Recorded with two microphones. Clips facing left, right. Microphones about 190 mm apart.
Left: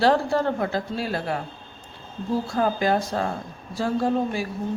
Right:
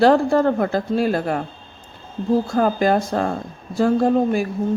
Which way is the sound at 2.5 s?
50° right (ahead or behind).